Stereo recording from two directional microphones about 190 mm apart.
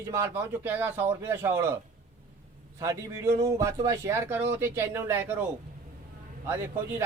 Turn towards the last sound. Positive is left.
turn(degrees=-15)  # may be behind; listen again after turning